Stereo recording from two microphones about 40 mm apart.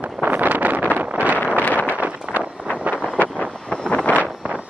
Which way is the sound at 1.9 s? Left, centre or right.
Right.